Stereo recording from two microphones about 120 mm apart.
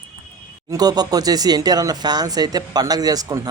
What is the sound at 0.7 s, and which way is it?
Speech, 35° right (ahead or behind).